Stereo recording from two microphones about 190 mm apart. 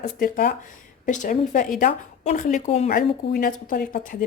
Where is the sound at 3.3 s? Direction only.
50° left (ahead or behind).